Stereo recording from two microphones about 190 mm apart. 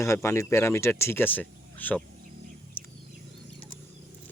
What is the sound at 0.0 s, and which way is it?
Speech, 15° left (ahead or behind).